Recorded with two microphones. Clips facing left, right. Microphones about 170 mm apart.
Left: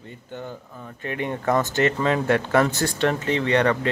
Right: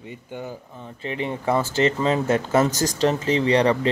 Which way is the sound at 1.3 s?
10° right (ahead or behind).